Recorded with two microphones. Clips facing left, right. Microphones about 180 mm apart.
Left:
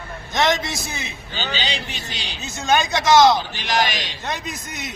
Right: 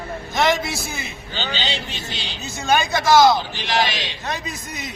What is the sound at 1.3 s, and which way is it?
A man's voice, 15° left (ahead or behind).